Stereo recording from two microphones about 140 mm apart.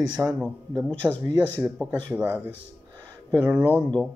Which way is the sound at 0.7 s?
10° left (ahead or behind).